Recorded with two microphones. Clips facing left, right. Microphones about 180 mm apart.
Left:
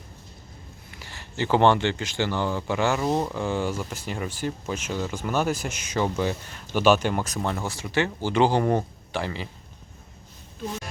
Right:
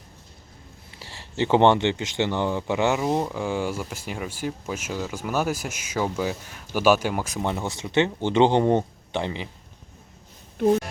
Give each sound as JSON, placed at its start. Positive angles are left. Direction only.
{"t": 0.9, "sound": "speech", "side_deg": -30}
{"t": 10.6, "sound": "speech", "side_deg": -60}